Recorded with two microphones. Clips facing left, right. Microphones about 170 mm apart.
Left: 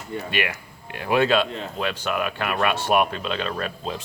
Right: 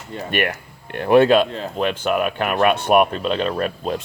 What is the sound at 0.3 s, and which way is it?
Speech, 50° right (ahead or behind).